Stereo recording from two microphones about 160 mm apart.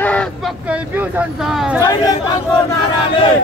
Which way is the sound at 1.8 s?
25° left (ahead or behind).